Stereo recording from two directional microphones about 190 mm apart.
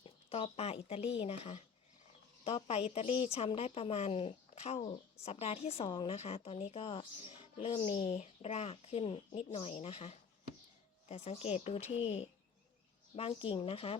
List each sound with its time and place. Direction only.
0.0 s speech: 30° left (ahead or behind)
8.0 s speech: 35° left (ahead or behind)